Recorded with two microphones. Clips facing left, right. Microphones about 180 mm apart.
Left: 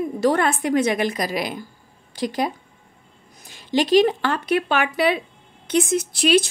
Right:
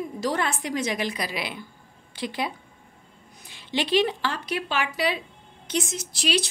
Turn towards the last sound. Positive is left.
turn(degrees=55)  # may be behind; listen again after turning